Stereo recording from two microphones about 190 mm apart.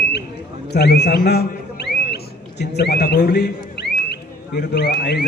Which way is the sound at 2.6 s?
60° left (ahead or behind).